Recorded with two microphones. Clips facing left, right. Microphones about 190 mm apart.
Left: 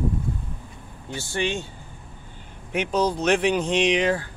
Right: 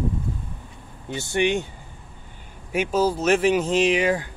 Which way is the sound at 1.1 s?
20° right (ahead or behind).